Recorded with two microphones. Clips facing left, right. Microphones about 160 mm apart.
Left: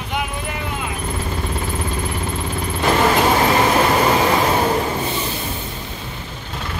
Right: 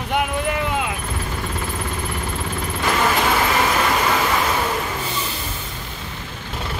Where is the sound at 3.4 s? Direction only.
30° left (ahead or behind).